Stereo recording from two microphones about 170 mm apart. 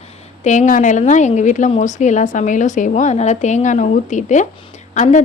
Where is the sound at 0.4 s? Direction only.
45° left (ahead or behind).